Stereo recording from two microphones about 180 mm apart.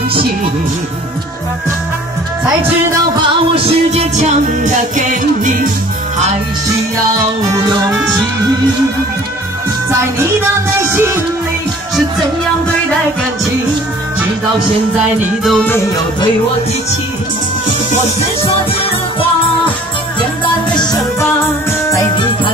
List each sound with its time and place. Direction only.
3.2 s music: 35° right (ahead or behind)
10.9 s music: 15° right (ahead or behind)
15.1 s music: centre (ahead or behind)
20.2 s music: 25° left (ahead or behind)